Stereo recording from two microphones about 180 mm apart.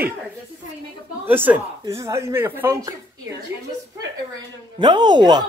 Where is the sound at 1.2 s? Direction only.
10° right (ahead or behind).